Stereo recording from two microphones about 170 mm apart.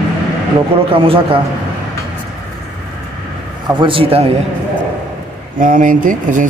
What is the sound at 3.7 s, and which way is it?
Speech, 30° right (ahead or behind).